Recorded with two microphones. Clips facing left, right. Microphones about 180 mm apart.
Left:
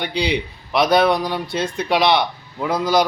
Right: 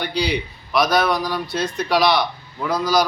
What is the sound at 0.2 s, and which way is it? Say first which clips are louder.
A man's voice: left 2 dB; 25° left (ahead or behind).